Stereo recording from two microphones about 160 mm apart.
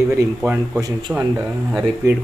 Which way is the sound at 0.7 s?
25° right (ahead or behind).